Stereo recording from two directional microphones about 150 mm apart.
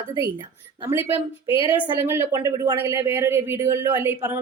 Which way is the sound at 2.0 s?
20° right (ahead or behind).